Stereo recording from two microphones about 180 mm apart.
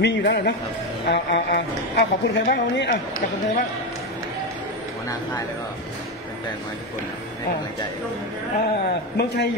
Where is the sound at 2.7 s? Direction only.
75° left (ahead or behind).